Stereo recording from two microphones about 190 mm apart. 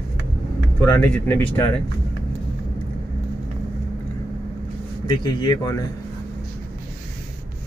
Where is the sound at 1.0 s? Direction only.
10° left (ahead or behind).